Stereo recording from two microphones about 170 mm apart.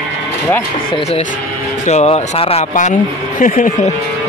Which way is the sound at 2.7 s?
50° left (ahead or behind).